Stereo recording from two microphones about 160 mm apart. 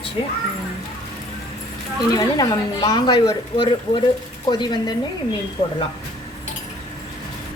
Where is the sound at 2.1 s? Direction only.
25° left (ahead or behind).